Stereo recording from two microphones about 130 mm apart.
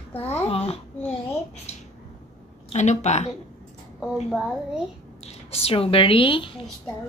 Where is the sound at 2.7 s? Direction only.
60° left (ahead or behind).